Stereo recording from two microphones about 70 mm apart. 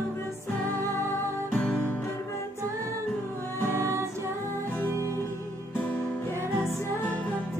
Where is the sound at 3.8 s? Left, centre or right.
Right.